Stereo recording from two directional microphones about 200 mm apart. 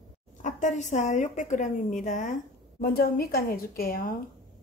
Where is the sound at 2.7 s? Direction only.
50° left (ahead or behind).